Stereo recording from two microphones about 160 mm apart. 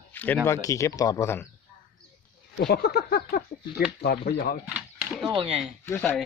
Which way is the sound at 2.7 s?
90° left.